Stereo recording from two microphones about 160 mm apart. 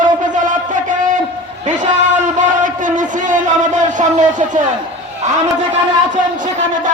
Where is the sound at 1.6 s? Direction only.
50° right (ahead or behind).